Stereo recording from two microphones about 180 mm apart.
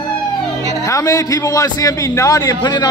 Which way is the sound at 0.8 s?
20° left (ahead or behind).